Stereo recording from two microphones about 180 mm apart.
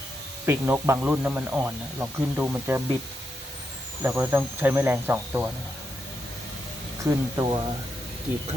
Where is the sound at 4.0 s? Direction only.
10° right (ahead or behind).